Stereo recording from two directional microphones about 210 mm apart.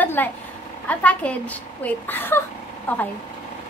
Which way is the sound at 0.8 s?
5° left (ahead or behind).